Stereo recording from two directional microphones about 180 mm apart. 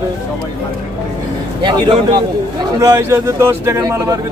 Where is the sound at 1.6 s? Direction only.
25° right (ahead or behind).